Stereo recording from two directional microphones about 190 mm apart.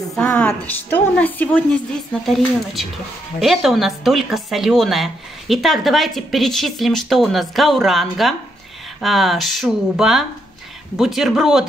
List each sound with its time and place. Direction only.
0.1 s a woman's voice: 5° left (ahead or behind)